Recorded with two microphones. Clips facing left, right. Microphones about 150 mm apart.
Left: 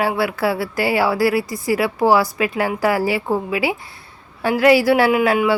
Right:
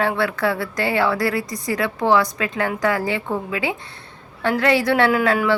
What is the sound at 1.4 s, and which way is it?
A woman's voice, 5° left (ahead or behind).